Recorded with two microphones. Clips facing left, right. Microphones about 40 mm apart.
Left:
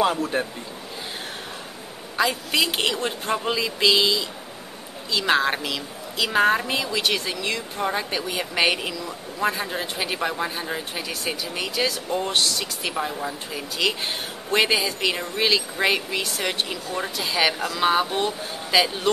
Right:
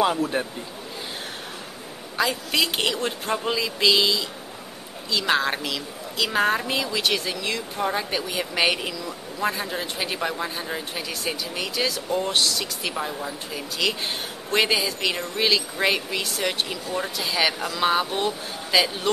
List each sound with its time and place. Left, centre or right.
0.0 s a woman's voice: centre
2.1 s a woman's voice: centre